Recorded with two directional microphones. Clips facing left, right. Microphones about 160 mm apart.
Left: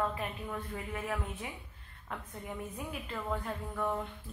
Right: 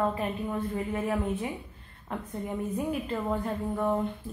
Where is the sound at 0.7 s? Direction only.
35° right (ahead or behind).